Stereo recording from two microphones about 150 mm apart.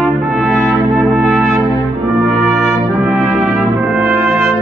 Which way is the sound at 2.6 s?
Centre (ahead or behind).